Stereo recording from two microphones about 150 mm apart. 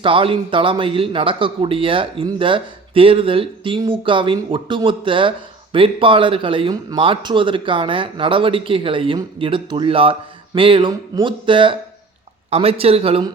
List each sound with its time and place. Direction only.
0.0 s speech: 35° right (ahead or behind)